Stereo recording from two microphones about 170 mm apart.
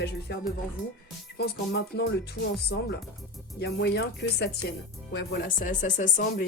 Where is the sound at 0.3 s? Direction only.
70° left (ahead or behind).